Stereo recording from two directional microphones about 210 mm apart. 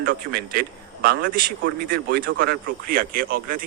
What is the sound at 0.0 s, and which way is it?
Speech, 45° right (ahead or behind).